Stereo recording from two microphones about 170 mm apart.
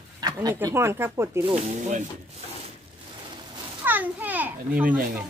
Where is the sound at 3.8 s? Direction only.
10° right (ahead or behind).